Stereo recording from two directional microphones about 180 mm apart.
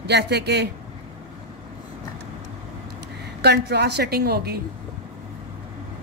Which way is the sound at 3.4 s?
65° right (ahead or behind).